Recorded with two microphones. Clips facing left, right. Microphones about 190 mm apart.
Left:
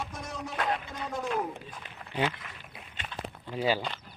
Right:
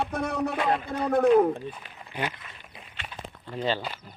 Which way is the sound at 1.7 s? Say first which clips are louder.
Right 1 dB; 10° right (ahead or behind).